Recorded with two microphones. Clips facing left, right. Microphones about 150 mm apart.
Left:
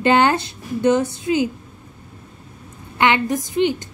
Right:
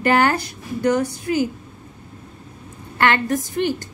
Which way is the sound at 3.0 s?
15° left (ahead or behind).